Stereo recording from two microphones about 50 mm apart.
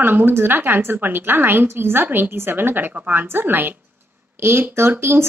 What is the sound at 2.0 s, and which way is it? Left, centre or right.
Speech, right.